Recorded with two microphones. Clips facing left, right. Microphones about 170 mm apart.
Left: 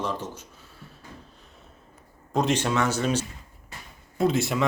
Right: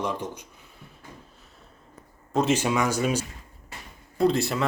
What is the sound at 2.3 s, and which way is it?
Speech, centre (ahead or behind).